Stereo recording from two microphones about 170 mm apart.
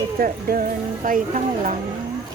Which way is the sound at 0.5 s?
60° right (ahead or behind).